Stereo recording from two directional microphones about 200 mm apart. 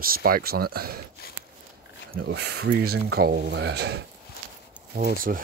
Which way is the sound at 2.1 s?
55° right (ahead or behind).